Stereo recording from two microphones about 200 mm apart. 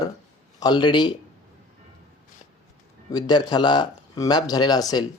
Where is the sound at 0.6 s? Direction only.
20° left (ahead or behind).